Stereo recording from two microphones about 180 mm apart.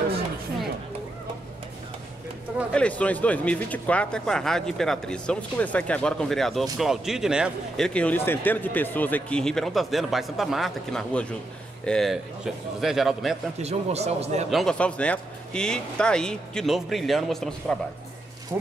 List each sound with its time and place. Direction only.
2.7 s speech: 5° left (ahead or behind)
13.6 s speech: 35° right (ahead or behind)
14.5 s speech: centre (ahead or behind)
18.5 s speech: 15° right (ahead or behind)